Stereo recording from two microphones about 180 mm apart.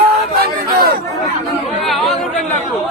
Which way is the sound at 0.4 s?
60° right (ahead or behind).